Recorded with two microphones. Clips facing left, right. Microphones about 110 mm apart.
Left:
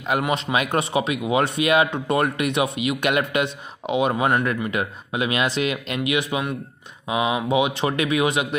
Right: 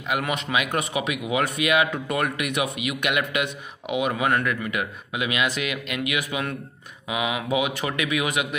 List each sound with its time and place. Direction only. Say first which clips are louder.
0.3 s speech: left 3 dB; 30° left (ahead or behind)